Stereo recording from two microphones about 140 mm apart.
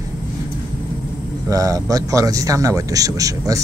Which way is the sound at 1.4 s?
25° right (ahead or behind).